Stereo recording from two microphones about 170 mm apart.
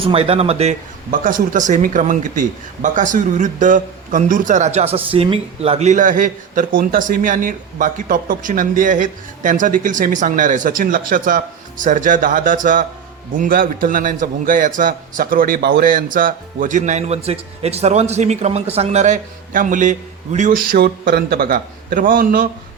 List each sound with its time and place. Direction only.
0.0 s speech: 35° right (ahead or behind); by 22.4 s 55° right (ahead or behind)